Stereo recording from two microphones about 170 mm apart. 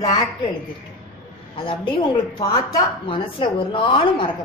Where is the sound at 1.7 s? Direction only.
30° left (ahead or behind).